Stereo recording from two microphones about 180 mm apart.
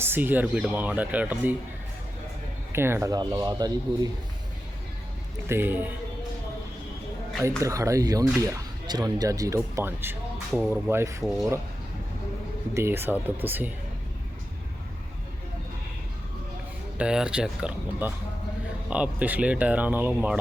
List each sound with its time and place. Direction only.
0.0 s speech: 10° right (ahead or behind)
2.7 s speech: 15° right (ahead or behind)
5.5 s speech: 10° right (ahead or behind)
7.4 s speech: 15° right (ahead or behind)
11.2 s speech: centre (ahead or behind)
12.7 s speech: 15° right (ahead or behind)
17.0 s speech: 5° right (ahead or behind)